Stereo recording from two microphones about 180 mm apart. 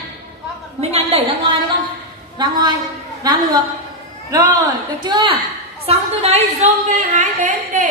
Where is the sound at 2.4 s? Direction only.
25° right (ahead or behind).